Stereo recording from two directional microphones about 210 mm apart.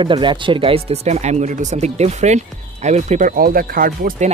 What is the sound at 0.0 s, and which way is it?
Speech, 20° right (ahead or behind).